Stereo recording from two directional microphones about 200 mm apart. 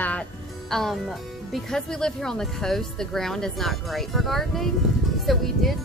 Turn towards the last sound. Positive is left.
turn(degrees=0)  # may be behind; listen again after turning